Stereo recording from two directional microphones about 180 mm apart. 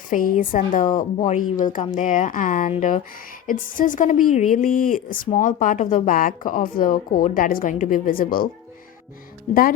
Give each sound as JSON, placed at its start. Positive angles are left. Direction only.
{"t": 0.1, "sound": "a woman's voice", "side_deg": 50}
{"t": 9.5, "sound": "speech", "side_deg": 40}